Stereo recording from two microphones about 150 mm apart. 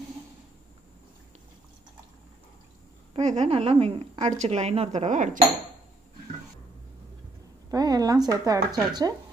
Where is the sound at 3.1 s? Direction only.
50° right (ahead or behind).